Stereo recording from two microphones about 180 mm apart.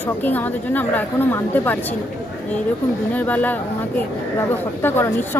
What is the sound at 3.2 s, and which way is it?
Speech, 10° left (ahead or behind).